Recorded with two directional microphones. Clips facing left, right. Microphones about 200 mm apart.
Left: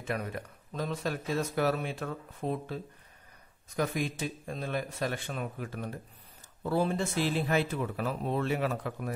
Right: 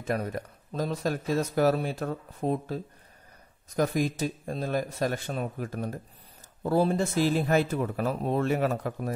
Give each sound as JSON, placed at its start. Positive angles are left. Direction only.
{"t": 0.0, "sound": "speech", "side_deg": -40}